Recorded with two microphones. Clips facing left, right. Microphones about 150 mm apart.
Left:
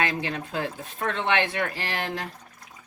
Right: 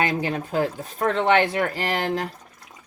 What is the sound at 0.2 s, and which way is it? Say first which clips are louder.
Speech: right 6 dB; 35° right (ahead or behind).